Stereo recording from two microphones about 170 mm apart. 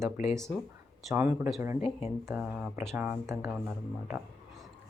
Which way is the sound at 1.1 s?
10° right (ahead or behind).